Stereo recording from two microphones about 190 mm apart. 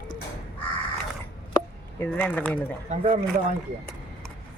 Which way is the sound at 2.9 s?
30° right (ahead or behind).